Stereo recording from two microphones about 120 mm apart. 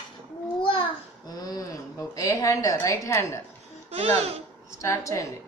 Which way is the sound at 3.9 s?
60° right (ahead or behind).